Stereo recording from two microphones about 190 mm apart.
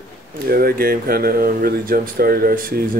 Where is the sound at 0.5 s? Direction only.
55° right (ahead or behind).